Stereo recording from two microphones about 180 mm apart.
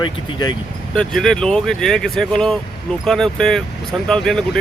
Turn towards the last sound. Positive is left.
turn(degrees=5)  # may be behind; listen again after turning